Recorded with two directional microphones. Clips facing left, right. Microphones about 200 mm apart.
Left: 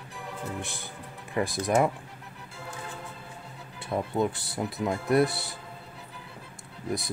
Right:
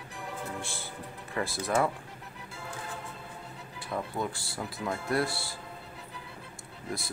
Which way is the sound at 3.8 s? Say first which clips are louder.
Left 6 dB; 20° left (ahead or behind).